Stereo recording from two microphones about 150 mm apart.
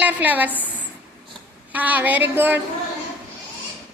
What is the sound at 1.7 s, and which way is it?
Speech, 10° right (ahead or behind).